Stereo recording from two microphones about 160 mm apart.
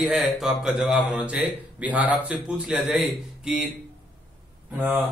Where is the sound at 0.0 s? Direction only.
5° right (ahead or behind).